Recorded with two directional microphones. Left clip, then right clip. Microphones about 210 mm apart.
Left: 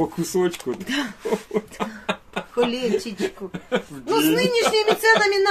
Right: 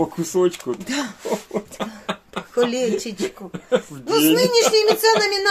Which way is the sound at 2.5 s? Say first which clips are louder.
Right 2 dB; 35° right (ahead or behind).